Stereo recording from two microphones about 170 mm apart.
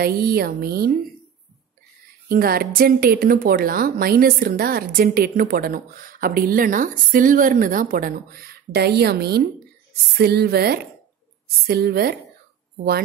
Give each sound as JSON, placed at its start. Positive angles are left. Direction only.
{"t": 0.0, "sound": "a woman's voice", "side_deg": -60}
{"t": 2.2, "sound": "a woman's voice", "side_deg": -60}